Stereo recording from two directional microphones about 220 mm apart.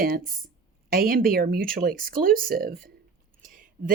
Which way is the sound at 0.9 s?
40° right (ahead or behind).